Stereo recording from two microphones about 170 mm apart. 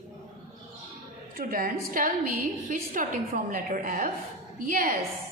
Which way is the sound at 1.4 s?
55° right (ahead or behind).